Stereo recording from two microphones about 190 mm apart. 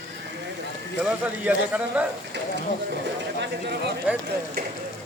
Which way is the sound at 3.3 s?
60° right (ahead or behind).